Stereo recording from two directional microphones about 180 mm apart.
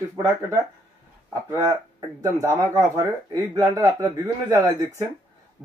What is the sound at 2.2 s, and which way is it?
A man's voice, 15° right (ahead or behind).